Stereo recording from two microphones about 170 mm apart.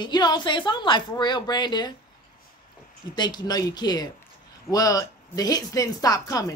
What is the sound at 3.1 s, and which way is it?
A woman's voice, 25° left (ahead or behind).